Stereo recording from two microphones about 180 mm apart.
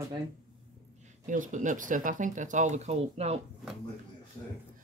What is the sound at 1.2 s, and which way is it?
Speech, 45° right (ahead or behind).